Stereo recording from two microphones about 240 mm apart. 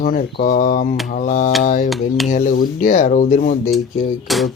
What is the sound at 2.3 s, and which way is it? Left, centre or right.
Speech, left.